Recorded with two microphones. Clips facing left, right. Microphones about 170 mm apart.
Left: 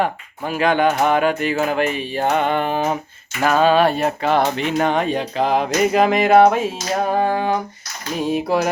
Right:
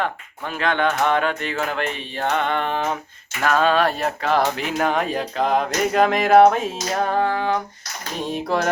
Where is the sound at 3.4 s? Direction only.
5° left (ahead or behind).